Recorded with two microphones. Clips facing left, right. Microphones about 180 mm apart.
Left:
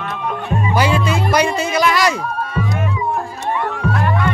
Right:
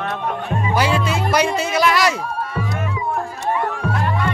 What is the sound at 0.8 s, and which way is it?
Music, centre (ahead or behind).